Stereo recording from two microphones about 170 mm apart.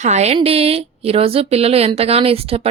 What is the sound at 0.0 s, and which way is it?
Speech, 40° right (ahead or behind).